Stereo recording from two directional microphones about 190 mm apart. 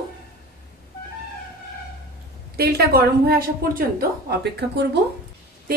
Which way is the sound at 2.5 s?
55° right (ahead or behind).